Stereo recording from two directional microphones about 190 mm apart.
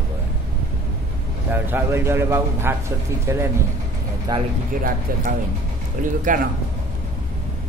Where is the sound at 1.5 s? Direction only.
10° right (ahead or behind).